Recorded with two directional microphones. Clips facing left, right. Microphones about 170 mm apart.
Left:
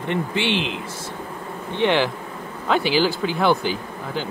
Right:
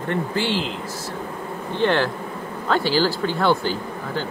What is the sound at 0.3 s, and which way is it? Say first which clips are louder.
Speech: even; 70° left (ahead or behind).